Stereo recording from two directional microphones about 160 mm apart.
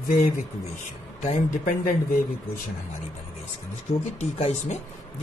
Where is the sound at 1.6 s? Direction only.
65° left (ahead or behind).